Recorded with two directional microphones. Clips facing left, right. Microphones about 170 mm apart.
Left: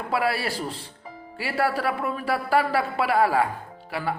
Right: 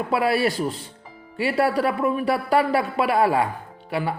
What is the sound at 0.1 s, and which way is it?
Speech, 25° right (ahead or behind).